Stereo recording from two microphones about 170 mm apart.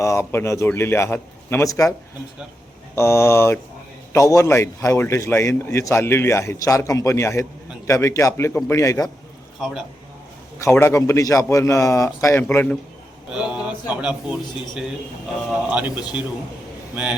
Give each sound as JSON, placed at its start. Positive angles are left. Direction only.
{"t": 0.0, "sound": "a man's voice", "side_deg": 15}
{"t": 2.9, "sound": "a man's voice", "side_deg": 15}
{"t": 9.6, "sound": "a man's voice", "side_deg": 0}
{"t": 10.6, "sound": "a man's voice", "side_deg": 15}
{"t": 13.3, "sound": "speech", "side_deg": -5}
{"t": 15.4, "sound": "a man's voice", "side_deg": -10}
{"t": 16.9, "sound": "a man's voice", "side_deg": -5}